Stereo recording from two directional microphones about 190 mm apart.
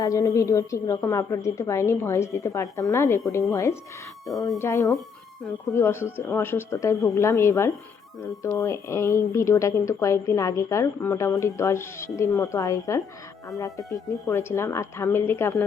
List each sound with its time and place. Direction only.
0.0 s speech: 15° left (ahead or behind)